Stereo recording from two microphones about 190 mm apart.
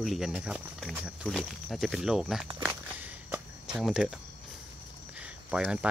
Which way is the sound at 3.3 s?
5° right (ahead or behind).